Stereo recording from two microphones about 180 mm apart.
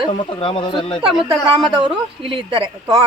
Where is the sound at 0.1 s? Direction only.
30° left (ahead or behind).